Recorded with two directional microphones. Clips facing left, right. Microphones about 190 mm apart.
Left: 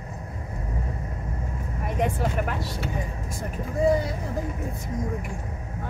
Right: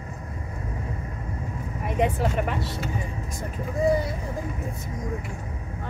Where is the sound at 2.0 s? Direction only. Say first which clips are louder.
Right 2 dB; 5° right (ahead or behind).